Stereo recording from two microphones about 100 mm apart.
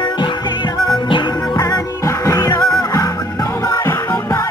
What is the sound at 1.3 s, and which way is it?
Music, 40° left (ahead or behind).